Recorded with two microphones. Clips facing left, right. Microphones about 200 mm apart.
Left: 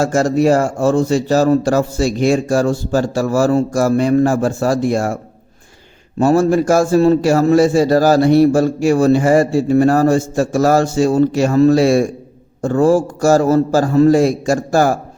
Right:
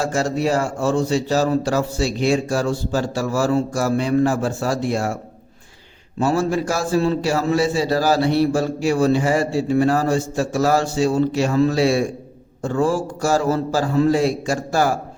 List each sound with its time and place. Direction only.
0.0 s a man's voice: 45° left (ahead or behind)
6.1 s a man's voice: 50° left (ahead or behind)